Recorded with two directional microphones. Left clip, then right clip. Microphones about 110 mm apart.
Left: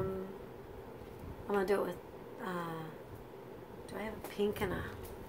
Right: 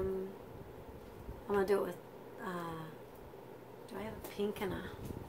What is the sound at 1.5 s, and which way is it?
A woman's voice, centre (ahead or behind).